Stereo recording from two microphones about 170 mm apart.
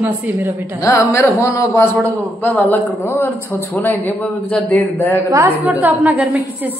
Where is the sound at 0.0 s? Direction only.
10° right (ahead or behind).